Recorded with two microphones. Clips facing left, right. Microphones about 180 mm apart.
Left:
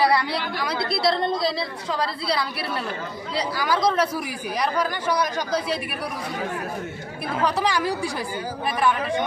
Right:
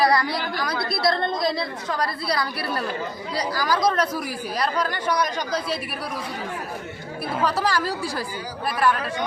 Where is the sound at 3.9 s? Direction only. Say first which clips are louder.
Left 1 dB; 10° left (ahead or behind).